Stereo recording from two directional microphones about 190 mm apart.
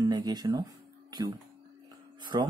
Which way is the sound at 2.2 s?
25° right (ahead or behind).